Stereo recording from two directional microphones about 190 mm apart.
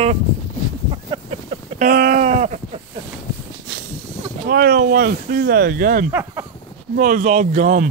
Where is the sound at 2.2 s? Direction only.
35° right (ahead or behind).